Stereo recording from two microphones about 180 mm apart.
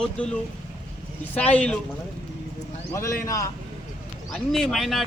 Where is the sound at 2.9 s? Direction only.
15° left (ahead or behind).